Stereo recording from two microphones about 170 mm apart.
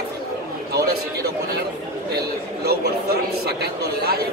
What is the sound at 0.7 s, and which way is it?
Speech, 65° right (ahead or behind).